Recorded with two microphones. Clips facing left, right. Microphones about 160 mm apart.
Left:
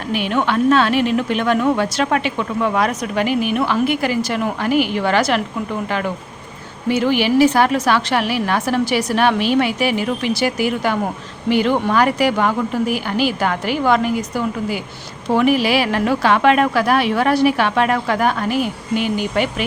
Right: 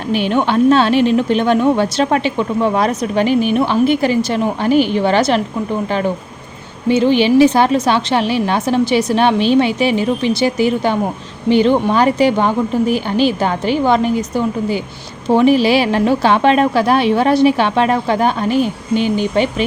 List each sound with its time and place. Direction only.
0.1 s a woman's voice: 30° right (ahead or behind)
6.8 s a woman's voice: 25° right (ahead or behind)